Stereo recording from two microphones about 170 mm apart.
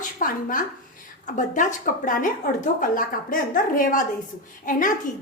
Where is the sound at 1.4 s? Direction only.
50° left (ahead or behind).